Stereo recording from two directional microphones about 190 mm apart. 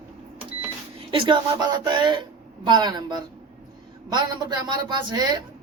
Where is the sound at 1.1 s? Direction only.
25° right (ahead or behind).